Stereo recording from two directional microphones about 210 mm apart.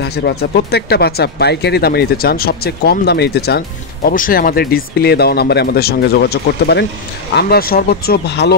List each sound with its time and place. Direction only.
0.0 s speech: 50° left (ahead or behind)